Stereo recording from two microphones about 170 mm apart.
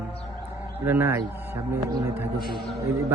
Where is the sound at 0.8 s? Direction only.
10° right (ahead or behind).